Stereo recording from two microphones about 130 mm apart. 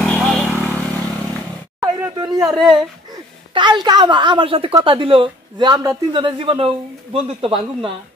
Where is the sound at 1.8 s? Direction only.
25° right (ahead or behind).